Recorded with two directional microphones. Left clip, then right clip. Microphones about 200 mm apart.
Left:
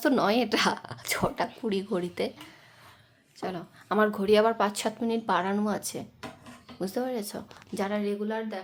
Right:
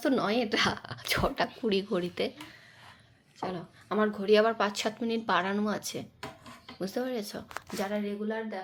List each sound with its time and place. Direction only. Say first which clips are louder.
0.0 s speech: left 4 dB; 20° left (ahead or behind)
3.4 s a woman's voice: left 1 dB; 30° left (ahead or behind)
4.3 s speech: even; 15° left (ahead or behind)
8.3 s speech: left 2 dB; centre (ahead or behind)